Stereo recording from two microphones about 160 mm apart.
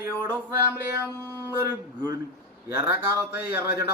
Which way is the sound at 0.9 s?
15° right (ahead or behind).